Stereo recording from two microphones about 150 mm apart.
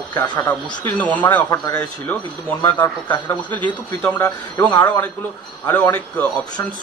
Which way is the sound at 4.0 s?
15° left (ahead or behind).